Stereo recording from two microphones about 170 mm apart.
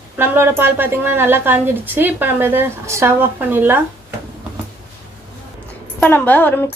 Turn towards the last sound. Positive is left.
turn(degrees=10)  # may be behind; listen again after turning